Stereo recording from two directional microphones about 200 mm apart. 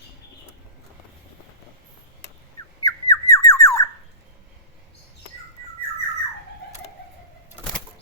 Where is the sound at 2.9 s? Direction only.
15° left (ahead or behind).